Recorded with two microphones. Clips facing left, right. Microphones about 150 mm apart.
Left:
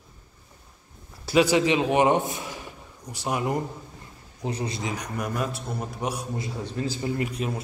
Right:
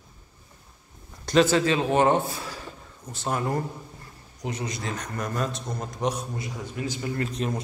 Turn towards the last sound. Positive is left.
turn(degrees=10)  # may be behind; listen again after turning